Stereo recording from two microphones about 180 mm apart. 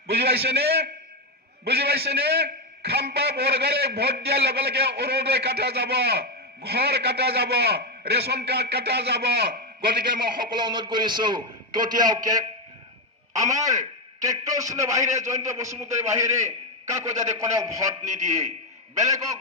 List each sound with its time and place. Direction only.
0.1 s a man's voice: 65° right (ahead or behind)
10.5 s a man's voice: 25° right (ahead or behind)
18.1 s a man's voice: 40° right (ahead or behind)
18.9 s a man's voice: 20° right (ahead or behind)